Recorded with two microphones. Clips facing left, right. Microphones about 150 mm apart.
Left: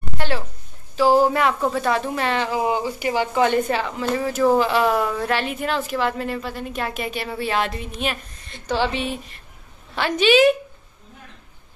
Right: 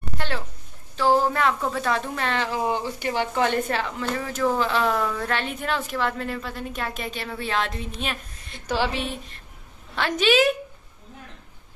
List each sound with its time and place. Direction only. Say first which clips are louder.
0.9 s speech: left 4 dB; 10° left (ahead or behind)